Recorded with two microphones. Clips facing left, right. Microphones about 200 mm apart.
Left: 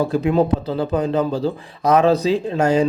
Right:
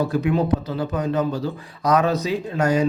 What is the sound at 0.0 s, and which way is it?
Speech, 30° left (ahead or behind).